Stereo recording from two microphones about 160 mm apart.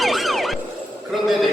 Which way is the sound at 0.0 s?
Centre (ahead or behind).